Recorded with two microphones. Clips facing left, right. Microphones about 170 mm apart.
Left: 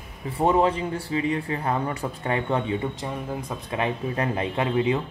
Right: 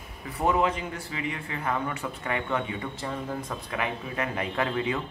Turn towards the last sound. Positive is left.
turn(degrees=20)  # may be behind; listen again after turning